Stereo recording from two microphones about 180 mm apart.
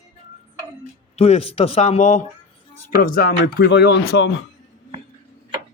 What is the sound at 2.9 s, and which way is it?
A man's voice, 55° left (ahead or behind).